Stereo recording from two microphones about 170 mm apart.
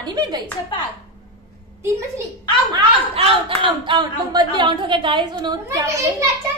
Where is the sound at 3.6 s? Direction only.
25° right (ahead or behind).